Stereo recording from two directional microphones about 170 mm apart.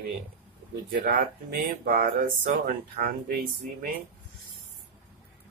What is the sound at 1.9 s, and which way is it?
Speech, 55° right (ahead or behind).